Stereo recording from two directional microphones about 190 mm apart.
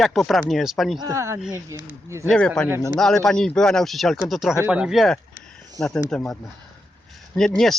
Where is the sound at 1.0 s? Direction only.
15° right (ahead or behind).